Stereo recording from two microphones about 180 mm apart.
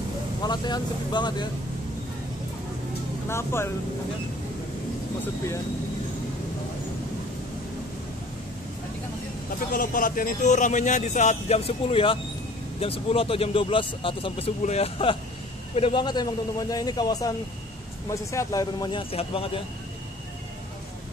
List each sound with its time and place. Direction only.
0.4 s a man's voice: 25° left (ahead or behind)
3.3 s speech: 15° left (ahead or behind)
9.6 s a man's voice: 50° left (ahead or behind); by 19.6 s 30° left (ahead or behind)